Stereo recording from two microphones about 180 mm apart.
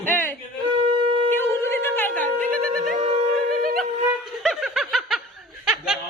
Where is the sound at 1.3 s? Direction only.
15° left (ahead or behind).